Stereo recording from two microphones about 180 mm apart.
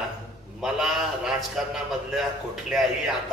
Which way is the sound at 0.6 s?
Centre (ahead or behind).